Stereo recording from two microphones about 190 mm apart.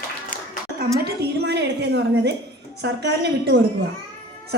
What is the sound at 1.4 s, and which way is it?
A woman's voice, 65° right (ahead or behind).